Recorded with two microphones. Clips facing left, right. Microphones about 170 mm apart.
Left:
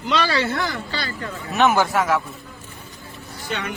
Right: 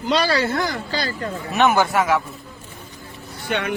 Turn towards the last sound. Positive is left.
turn(degrees=-60)  # may be behind; listen again after turning